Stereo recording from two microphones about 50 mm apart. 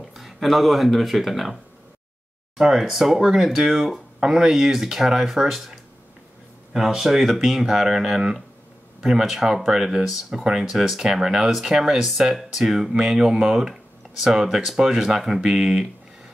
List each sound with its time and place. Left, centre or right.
0.0 s speech: centre